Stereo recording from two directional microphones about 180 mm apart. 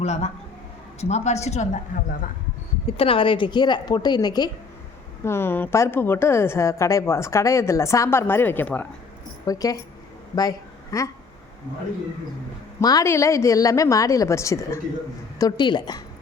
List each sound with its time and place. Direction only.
0.0 s a man's voice: 35° left (ahead or behind)
2.8 s a woman's voice: 30° left (ahead or behind)
10.9 s a woman's voice: 20° left (ahead or behind)
12.8 s a woman's voice: 20° left (ahead or behind)